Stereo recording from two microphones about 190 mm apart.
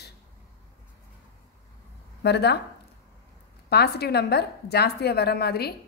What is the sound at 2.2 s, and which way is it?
Speech, 60° left (ahead or behind).